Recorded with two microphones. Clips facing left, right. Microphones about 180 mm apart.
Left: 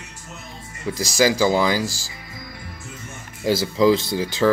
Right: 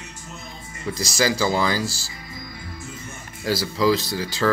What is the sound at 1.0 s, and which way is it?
Speech, 15° left (ahead or behind).